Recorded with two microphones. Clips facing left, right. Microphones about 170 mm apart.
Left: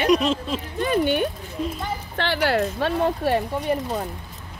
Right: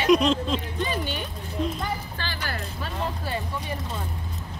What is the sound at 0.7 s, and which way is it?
Speech, 55° left (ahead or behind).